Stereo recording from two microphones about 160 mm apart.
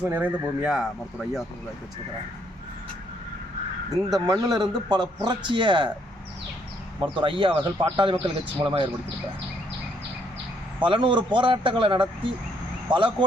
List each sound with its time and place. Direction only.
0.0 s speech: 10° right (ahead or behind)
4.1 s a man's voice: 25° right (ahead or behind)
7.0 s speech: 30° right (ahead or behind)
10.8 s speech: 30° right (ahead or behind)